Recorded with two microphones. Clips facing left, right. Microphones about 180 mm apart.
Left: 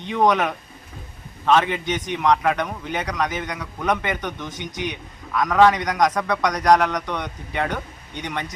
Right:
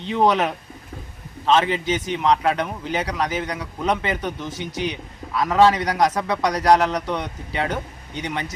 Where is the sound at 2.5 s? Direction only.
10° right (ahead or behind).